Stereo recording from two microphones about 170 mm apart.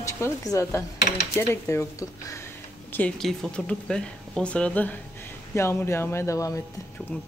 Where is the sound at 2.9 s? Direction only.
5° left (ahead or behind).